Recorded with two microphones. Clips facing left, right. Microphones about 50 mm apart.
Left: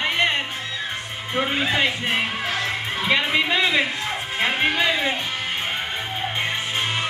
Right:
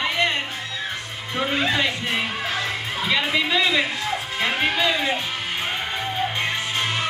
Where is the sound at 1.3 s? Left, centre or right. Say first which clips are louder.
Even; centre.